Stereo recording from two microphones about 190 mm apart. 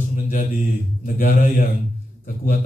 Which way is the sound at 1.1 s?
45° left (ahead or behind).